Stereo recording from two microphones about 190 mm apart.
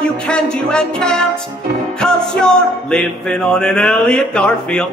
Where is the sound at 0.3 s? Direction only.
5° left (ahead or behind).